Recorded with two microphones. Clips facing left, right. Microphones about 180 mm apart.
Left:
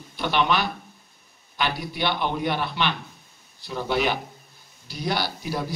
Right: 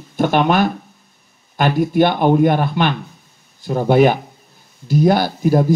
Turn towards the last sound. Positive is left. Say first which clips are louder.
# right 14 dB
turn(degrees=-50)  # may be behind; listen again after turning